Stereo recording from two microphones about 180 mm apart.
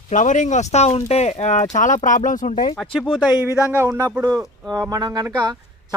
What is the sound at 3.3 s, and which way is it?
Speech, 10° right (ahead or behind).